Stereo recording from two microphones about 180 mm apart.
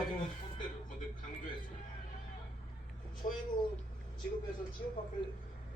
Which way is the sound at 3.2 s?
30° left (ahead or behind).